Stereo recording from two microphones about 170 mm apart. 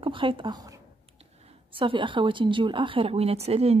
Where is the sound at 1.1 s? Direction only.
35° right (ahead or behind).